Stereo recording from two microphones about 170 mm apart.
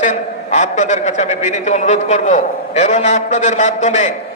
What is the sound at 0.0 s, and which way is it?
A man's voice, 45° left (ahead or behind).